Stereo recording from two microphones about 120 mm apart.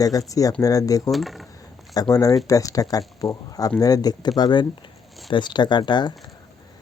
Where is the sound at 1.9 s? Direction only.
30° left (ahead or behind).